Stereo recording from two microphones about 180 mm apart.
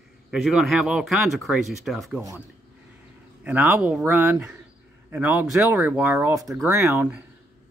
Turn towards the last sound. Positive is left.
turn(degrees=-10)  # may be behind; listen again after turning